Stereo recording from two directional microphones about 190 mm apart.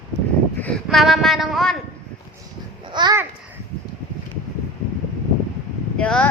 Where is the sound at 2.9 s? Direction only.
20° right (ahead or behind).